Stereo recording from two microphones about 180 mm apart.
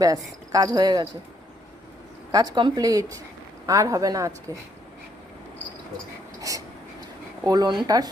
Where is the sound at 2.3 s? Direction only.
25° right (ahead or behind).